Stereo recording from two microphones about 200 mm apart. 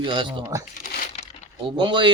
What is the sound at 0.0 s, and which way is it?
Speech, 25° right (ahead or behind).